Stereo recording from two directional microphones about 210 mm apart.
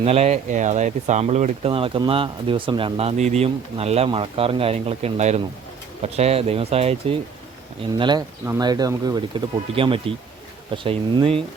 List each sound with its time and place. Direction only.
0.0 s speech: 30° right (ahead or behind)